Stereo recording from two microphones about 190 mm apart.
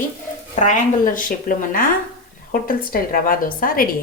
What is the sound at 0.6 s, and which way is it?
A woman's voice, 40° left (ahead or behind).